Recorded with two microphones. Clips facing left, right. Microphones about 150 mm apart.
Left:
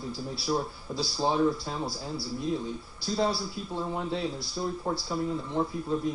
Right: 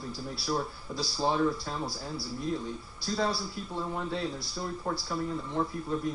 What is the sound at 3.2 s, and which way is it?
Speech, 15° left (ahead or behind).